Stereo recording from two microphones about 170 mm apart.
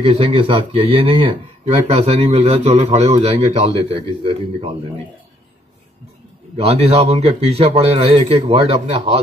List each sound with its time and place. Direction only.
0.0 s speech: 35° right (ahead or behind)
6.5 s speech: 35° right (ahead or behind)